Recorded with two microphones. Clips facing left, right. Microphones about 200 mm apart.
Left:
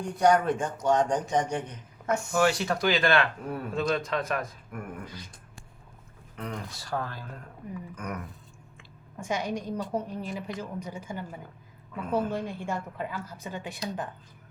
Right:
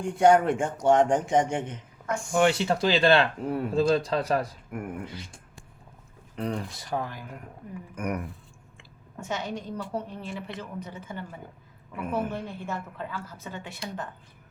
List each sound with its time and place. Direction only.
0.0 s speech: 25° right (ahead or behind)
2.0 s a man's voice: 20° left (ahead or behind)
2.3 s speech: 25° right (ahead or behind)
7.9 s speech: 30° right (ahead or behind)
9.2 s a woman's voice: 15° left (ahead or behind)